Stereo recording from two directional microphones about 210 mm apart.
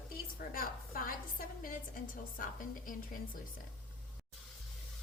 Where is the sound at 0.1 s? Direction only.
45° left (ahead or behind).